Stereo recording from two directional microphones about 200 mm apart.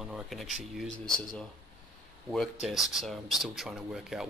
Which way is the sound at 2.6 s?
Centre (ahead or behind).